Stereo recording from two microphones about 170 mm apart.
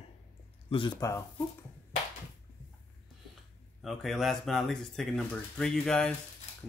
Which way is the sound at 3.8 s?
Centre (ahead or behind).